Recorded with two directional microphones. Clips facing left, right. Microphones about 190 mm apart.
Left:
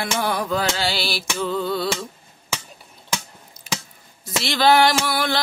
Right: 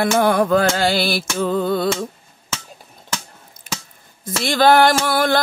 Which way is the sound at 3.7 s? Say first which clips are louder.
Left 1 dB; 50° right (ahead or behind).